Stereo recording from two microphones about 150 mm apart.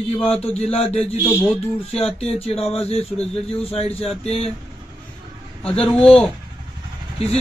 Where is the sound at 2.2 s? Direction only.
40° left (ahead or behind).